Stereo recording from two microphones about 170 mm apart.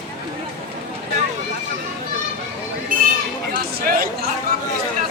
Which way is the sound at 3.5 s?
65° right (ahead or behind).